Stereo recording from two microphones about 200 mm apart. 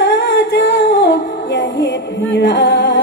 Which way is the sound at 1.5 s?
65° left (ahead or behind).